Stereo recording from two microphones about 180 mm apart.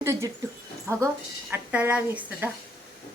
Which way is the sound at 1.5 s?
10° right (ahead or behind).